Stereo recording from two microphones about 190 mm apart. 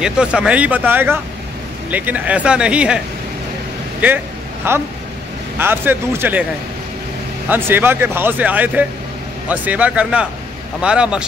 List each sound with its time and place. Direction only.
0.0 s speech: 5° right (ahead or behind)
4.6 s speech: 10° right (ahead or behind)
7.4 s speech: 10° right (ahead or behind)